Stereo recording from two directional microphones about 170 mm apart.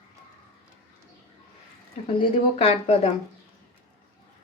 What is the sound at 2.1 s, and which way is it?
Speech, 35° left (ahead or behind).